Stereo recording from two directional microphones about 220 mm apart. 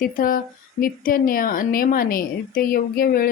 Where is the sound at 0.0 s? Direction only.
40° left (ahead or behind).